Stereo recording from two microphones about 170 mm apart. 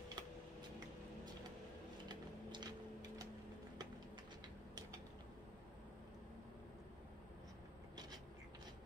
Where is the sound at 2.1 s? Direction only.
25° right (ahead or behind).